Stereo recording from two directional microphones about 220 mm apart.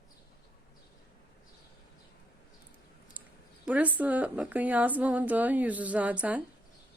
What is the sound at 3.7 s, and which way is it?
Speech, 5° right (ahead or behind).